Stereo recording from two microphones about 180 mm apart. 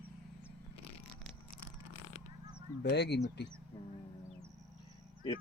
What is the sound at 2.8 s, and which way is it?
Speech, 70° left (ahead or behind).